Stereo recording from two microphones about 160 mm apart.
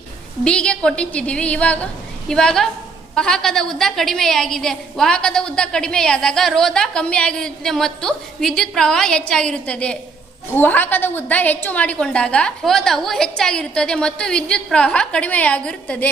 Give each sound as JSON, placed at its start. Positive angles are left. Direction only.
{"t": 0.4, "sound": "a woman's voice", "side_deg": 5}